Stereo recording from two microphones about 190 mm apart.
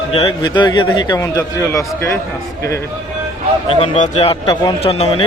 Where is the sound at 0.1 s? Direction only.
30° left (ahead or behind).